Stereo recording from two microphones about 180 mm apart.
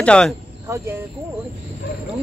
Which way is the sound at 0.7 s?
15° right (ahead or behind).